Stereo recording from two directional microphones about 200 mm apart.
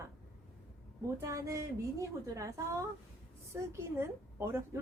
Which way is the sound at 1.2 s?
15° right (ahead or behind).